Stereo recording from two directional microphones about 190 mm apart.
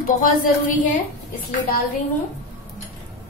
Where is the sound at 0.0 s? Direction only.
45° left (ahead or behind).